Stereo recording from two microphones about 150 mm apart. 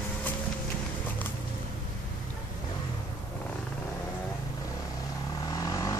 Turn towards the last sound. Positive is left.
turn(degrees=25)  # may be behind; listen again after turning